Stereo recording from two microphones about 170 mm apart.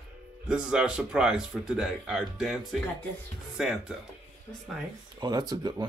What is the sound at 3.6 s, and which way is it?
Speech, 5° right (ahead or behind).